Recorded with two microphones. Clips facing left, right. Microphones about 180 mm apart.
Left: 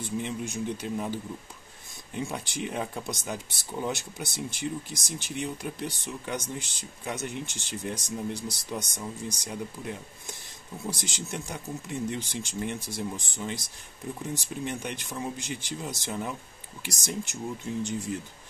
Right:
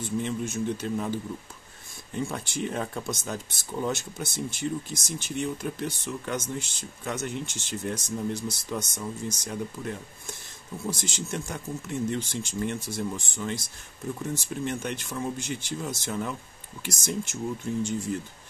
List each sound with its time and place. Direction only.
0.0 s speech: 15° left (ahead or behind)